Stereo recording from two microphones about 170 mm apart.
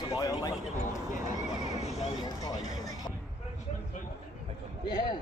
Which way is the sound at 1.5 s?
40° left (ahead or behind).